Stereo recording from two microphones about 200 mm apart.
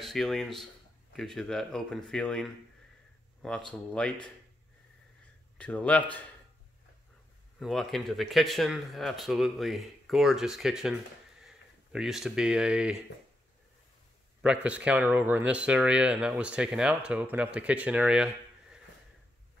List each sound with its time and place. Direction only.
0.0 s speech: centre (ahead or behind)
5.6 s a man's voice: 5° left (ahead or behind)
7.5 s speech: centre (ahead or behind)
14.4 s speech: 5° right (ahead or behind)